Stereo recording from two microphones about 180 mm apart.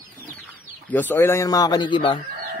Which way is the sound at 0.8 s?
10° left (ahead or behind).